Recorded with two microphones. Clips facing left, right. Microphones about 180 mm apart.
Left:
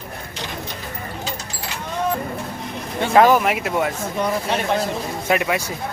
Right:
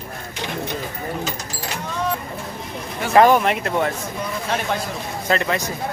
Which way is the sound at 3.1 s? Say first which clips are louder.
Even; centre (ahead or behind).